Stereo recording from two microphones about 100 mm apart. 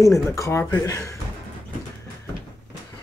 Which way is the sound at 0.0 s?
30° left (ahead or behind).